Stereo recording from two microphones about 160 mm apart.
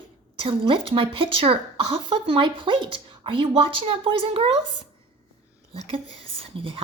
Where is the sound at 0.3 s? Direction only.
35° right (ahead or behind).